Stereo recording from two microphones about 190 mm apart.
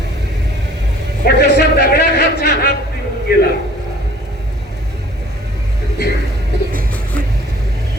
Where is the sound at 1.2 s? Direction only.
60° left (ahead or behind).